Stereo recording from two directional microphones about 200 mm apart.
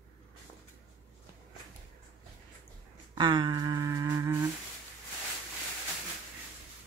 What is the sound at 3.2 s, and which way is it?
Humming, 25° right (ahead or behind).